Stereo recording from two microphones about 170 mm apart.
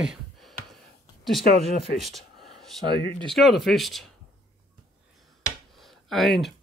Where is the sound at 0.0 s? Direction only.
Centre (ahead or behind).